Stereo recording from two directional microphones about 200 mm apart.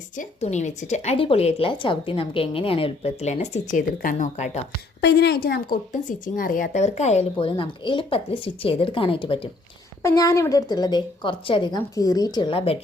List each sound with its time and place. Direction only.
0.2 s a woman's voice: 35° left (ahead or behind)
4.9 s a woman's voice: 55° left (ahead or behind); by 12.7 s 25° left (ahead or behind)